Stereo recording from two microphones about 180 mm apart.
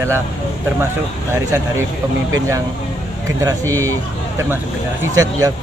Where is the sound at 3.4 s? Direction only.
15° right (ahead or behind).